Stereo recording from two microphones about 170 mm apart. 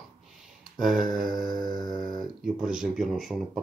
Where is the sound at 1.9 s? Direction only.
25° right (ahead or behind).